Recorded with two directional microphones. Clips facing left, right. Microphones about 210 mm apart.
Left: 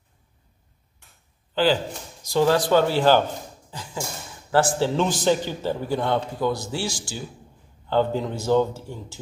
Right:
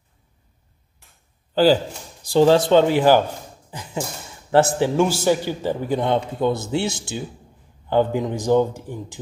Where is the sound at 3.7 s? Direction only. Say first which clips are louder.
Right 4 dB; 20° right (ahead or behind).